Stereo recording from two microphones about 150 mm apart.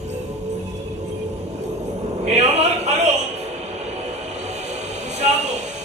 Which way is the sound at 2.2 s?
50° right (ahead or behind).